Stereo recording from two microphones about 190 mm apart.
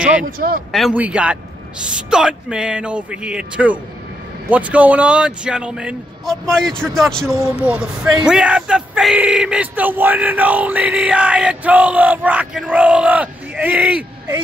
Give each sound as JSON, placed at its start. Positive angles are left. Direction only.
{"t": 0.2, "sound": "speech", "side_deg": -50}
{"t": 0.7, "sound": "a man's voice", "side_deg": 0}
{"t": 7.3, "sound": "speech", "side_deg": -10}